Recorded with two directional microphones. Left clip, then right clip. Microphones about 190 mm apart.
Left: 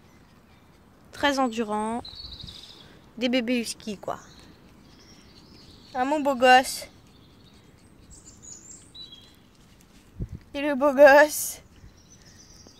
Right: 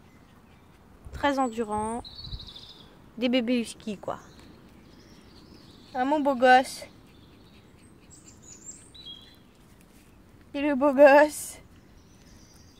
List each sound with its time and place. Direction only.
1.1 s a woman's voice: 30° left (ahead or behind)
3.2 s speech: 5° left (ahead or behind)
5.9 s speech: 5° left (ahead or behind)
10.5 s speech: 10° left (ahead or behind)